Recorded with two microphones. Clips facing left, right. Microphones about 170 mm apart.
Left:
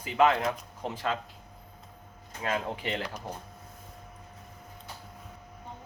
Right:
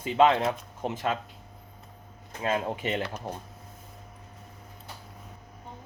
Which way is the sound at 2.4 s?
20° right (ahead or behind).